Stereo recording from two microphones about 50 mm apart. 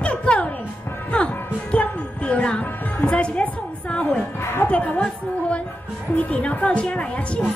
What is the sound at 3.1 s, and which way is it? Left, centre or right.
Speech, left.